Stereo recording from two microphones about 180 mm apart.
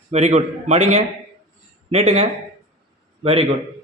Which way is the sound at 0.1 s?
40° right (ahead or behind).